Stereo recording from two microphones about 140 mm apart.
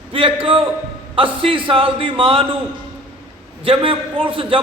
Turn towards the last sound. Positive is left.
turn(degrees=-40)  # may be behind; listen again after turning